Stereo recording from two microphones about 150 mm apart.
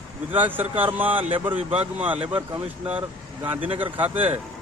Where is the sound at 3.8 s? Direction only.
10° right (ahead or behind).